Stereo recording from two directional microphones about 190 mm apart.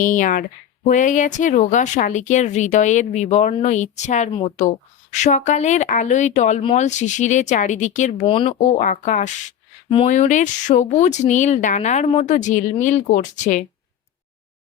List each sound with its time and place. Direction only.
0.0 s speech: 45° left (ahead or behind)
8.2 s speech: 30° left (ahead or behind)
8.8 s speech: 45° left (ahead or behind)